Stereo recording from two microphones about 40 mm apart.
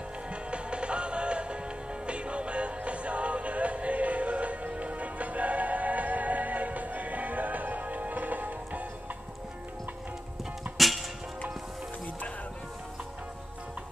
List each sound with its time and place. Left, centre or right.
0.3 s music: right
10.8 s music: centre